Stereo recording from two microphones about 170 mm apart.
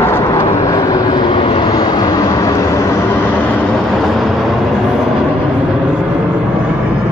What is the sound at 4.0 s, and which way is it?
Vehicle, centre (ahead or behind).